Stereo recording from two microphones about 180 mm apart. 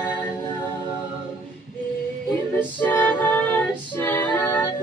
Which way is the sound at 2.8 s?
10° left (ahead or behind).